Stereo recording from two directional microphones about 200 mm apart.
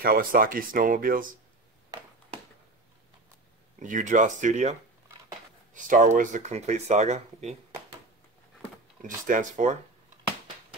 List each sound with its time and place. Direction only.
0.0 s speech: 45° right (ahead or behind)
1.9 s a sound: 20° right (ahead or behind)
3.8 s speech: 40° right (ahead or behind)
9.0 s speech: 40° right (ahead or behind)